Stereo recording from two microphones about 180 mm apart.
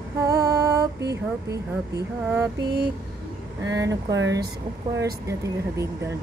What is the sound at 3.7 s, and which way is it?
Speech, 20° right (ahead or behind).